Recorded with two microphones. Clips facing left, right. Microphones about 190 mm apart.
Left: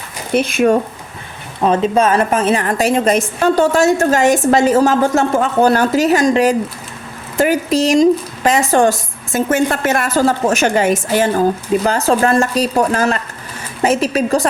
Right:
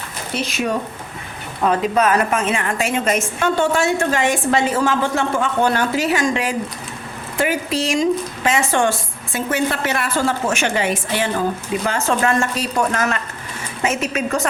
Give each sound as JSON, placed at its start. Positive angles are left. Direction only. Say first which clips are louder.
{"t": 0.3, "sound": "speech", "louder": "left 9 dB", "side_deg": 55}
{"t": 1.6, "sound": "a woman's voice", "louder": "left 4 dB", "side_deg": 25}